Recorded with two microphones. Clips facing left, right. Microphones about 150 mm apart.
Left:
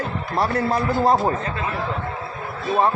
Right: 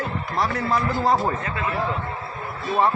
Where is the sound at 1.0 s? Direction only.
30° left (ahead or behind).